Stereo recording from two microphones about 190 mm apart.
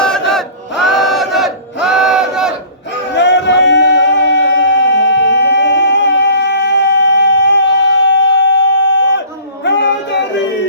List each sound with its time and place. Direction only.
0.0 s battle cry: 5° left (ahead or behind)
3.2 s a sound: 65° left (ahead or behind)
9.7 s child singing: 65° left (ahead or behind)